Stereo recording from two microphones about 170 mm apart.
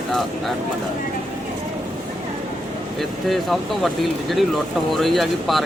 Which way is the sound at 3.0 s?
Centre (ahead or behind).